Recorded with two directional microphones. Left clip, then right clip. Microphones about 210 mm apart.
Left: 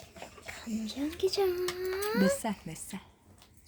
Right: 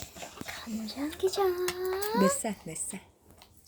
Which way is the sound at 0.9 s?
15° left (ahead or behind).